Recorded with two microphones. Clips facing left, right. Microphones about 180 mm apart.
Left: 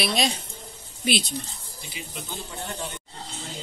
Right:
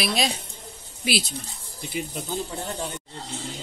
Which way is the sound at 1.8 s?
55° right (ahead or behind).